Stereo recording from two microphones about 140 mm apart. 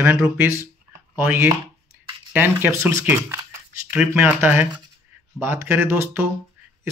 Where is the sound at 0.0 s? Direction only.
15° right (ahead or behind).